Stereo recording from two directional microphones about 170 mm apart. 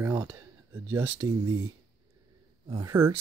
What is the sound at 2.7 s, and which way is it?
Speech, 20° right (ahead or behind).